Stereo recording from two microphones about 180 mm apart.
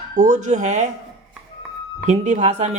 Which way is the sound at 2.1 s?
40° right (ahead or behind).